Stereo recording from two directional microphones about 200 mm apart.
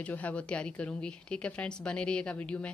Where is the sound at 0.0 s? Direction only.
5° left (ahead or behind).